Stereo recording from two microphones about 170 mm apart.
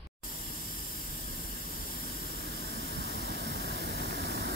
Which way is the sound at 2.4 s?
70° right (ahead or behind).